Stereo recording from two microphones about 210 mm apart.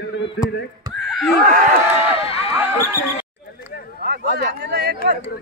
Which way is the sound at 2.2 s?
25° left (ahead or behind).